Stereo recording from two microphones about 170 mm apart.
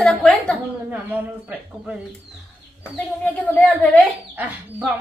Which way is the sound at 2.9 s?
10° left (ahead or behind).